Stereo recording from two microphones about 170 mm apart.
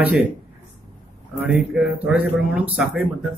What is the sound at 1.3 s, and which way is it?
Speech, 5° right (ahead or behind).